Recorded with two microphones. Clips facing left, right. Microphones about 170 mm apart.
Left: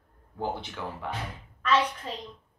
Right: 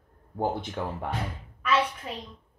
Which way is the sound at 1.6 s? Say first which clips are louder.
Left 1 dB; 10° right (ahead or behind).